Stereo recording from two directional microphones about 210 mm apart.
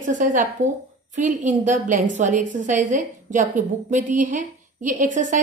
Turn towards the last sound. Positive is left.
turn(degrees=-40)  # may be behind; listen again after turning